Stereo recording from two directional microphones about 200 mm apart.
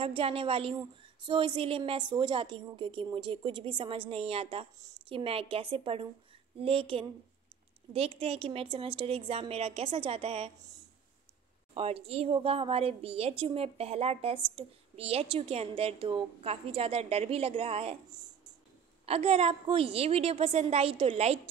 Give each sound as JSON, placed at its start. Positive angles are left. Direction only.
{"t": 0.0, "sound": "a woman's voice", "side_deg": -30}
{"t": 11.7, "sound": "a woman's voice", "side_deg": -30}
{"t": 19.0, "sound": "a woman's voice", "side_deg": -30}